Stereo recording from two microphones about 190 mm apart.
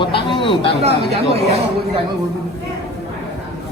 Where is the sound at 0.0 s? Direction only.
25° left (ahead or behind).